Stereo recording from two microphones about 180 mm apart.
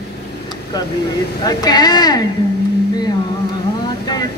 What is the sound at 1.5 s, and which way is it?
Chant, 20° left (ahead or behind).